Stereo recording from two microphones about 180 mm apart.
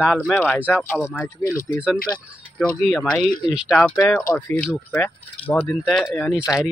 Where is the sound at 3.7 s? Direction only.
5° left (ahead or behind).